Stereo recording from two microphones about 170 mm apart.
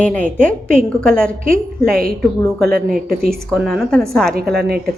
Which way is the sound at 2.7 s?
60° right (ahead or behind).